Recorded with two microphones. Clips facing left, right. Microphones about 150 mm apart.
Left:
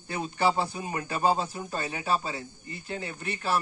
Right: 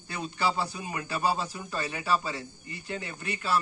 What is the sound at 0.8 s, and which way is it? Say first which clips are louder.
Speech: left 3 dB; 30° left (ahead or behind).